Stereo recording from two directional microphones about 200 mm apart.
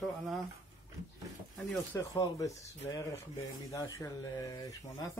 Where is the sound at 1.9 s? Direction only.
15° left (ahead or behind).